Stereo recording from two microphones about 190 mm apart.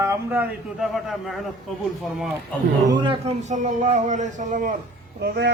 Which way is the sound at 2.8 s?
25° right (ahead or behind).